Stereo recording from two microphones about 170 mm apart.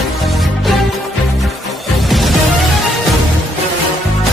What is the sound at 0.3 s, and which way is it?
Music, centre (ahead or behind).